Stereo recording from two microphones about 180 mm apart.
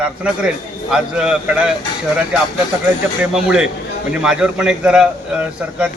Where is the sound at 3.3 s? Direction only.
5° right (ahead or behind).